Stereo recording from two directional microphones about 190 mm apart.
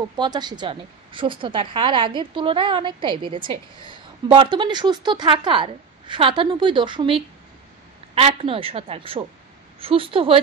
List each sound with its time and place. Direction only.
0.2 s a woman's voice: 20° right (ahead or behind)